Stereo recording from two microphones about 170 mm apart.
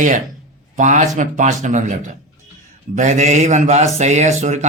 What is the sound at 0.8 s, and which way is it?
A man's voice, 45° right (ahead or behind).